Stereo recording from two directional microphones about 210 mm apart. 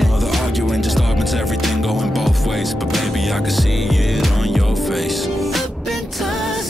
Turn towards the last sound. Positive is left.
turn(degrees=0)  # may be behind; listen again after turning